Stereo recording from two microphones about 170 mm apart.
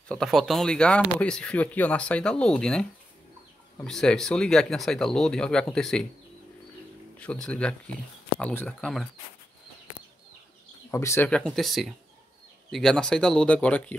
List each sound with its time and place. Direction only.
0.1 s speech: centre (ahead or behind)
7.2 s speech: 5° left (ahead or behind)
10.9 s speech: 15° left (ahead or behind)
11.2 s speech: 5° left (ahead or behind)